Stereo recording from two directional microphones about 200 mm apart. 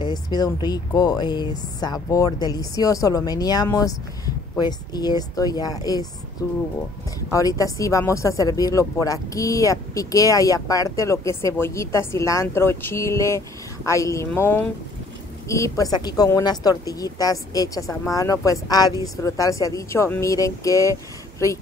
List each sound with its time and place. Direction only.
0.0 s speech: 20° left (ahead or behind)
7.2 s speech: 15° left (ahead or behind)